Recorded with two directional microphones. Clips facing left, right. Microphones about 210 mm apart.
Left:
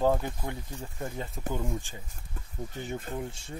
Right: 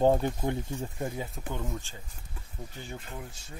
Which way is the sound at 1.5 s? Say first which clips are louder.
Left 3 dB; 15° left (ahead or behind).